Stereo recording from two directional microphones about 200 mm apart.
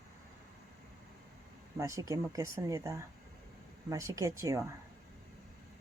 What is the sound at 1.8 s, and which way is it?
Speech, 15° right (ahead or behind).